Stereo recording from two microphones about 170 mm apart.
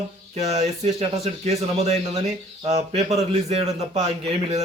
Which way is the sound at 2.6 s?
40° right (ahead or behind).